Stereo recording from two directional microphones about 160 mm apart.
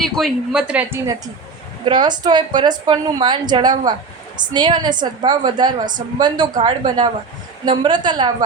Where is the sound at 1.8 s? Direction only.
30° right (ahead or behind).